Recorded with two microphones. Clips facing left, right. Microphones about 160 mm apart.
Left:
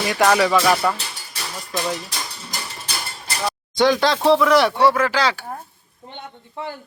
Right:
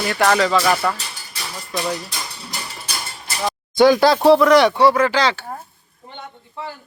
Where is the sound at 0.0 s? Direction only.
5° left (ahead or behind).